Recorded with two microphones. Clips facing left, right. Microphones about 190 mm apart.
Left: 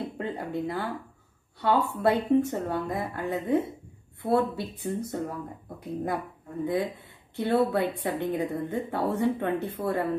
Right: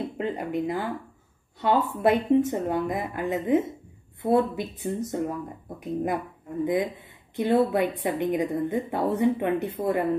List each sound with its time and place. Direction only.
0.2 s a woman's voice: 20° right (ahead or behind)